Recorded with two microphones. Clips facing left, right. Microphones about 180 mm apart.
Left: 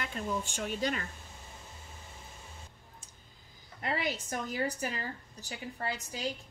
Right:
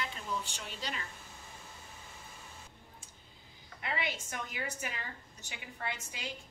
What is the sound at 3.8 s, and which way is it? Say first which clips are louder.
A woman's voice: left 4 dB; 40° left (ahead or behind).